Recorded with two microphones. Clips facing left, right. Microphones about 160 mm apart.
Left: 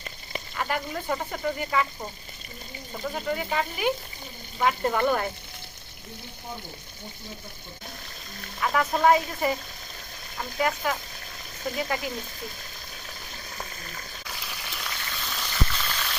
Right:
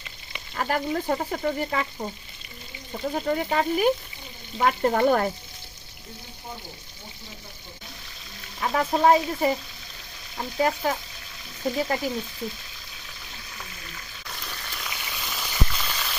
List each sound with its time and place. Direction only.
0.5 s speech: 40° right (ahead or behind)
3.0 s speech: 40° right (ahead or behind)
8.6 s speech: 30° right (ahead or behind)
10.6 s speech: 35° right (ahead or behind)
13.6 s frying: 40° left (ahead or behind)
14.3 s frying: 5° left (ahead or behind)